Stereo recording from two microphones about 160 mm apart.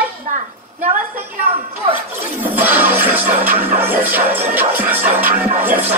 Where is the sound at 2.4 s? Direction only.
10° right (ahead or behind).